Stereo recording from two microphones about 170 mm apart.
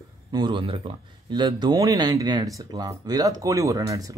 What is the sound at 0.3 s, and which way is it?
Speech, 25° right (ahead or behind).